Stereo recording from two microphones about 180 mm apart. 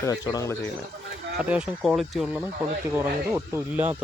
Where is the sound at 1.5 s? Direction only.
5° right (ahead or behind).